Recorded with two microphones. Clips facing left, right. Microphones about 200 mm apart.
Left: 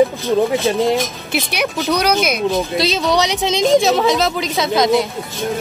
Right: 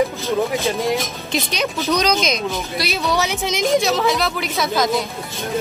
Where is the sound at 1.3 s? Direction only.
10° left (ahead or behind).